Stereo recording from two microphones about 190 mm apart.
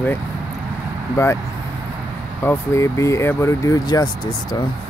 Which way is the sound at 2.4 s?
15° left (ahead or behind).